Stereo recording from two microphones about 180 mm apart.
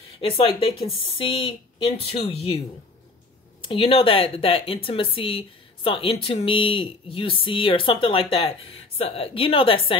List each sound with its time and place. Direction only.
0.2 s speech: 30° left (ahead or behind)
3.6 s speech: 30° left (ahead or behind)